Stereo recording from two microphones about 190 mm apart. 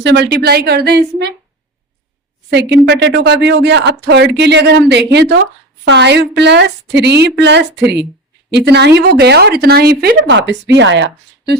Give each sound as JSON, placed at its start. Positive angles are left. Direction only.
{"t": 0.0, "sound": "speech", "side_deg": -60}
{"t": 2.5, "sound": "speech", "side_deg": -65}
{"t": 10.2, "sound": "speech", "side_deg": -65}